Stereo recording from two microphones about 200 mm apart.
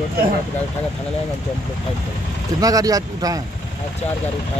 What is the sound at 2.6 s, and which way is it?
Speech, 20° right (ahead or behind).